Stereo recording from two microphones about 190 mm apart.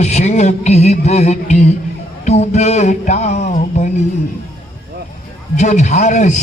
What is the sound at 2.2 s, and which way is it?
Music, 35° left (ahead or behind).